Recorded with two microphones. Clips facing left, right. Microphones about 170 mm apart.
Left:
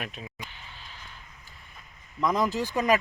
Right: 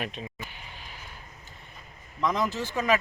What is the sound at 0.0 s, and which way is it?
Speech, 5° left (ahead or behind).